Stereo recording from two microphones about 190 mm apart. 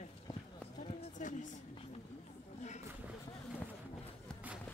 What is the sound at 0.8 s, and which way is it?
Run, 40° left (ahead or behind).